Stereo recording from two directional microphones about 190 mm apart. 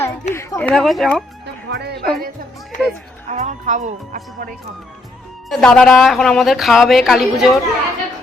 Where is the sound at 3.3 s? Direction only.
40° right (ahead or behind).